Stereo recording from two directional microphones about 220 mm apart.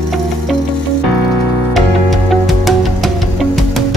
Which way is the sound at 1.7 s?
Centre (ahead or behind).